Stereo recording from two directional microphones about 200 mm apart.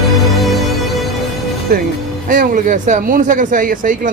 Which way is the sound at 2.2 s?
40° right (ahead or behind).